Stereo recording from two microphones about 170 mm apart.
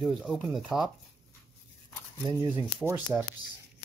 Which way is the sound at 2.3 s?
20° right (ahead or behind).